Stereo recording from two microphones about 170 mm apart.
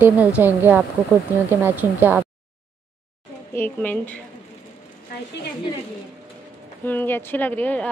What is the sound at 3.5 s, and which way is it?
Speech, 10° left (ahead or behind).